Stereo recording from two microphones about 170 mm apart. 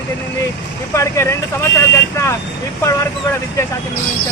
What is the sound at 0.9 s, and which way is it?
Speech, 15° left (ahead or behind).